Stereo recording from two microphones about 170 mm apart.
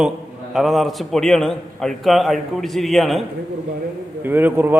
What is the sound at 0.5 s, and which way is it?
A man's voice, centre (ahead or behind).